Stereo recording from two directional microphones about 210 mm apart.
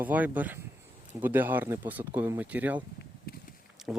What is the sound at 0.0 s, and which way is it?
Speech, 10° right (ahead or behind).